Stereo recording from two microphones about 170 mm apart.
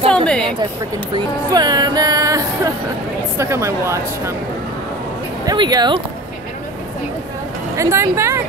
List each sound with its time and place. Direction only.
0.1 s a woman's voice: 5° left (ahead or behind)
1.1 s music: 25° right (ahead or behind)
3.3 s a woman's voice: 15° right (ahead or behind)
5.4 s speech: 25° right (ahead or behind)
7.7 s a woman's voice: 15° right (ahead or behind)